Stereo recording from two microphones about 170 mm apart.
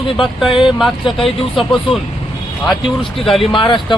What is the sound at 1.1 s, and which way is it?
Speech, 30° left (ahead or behind).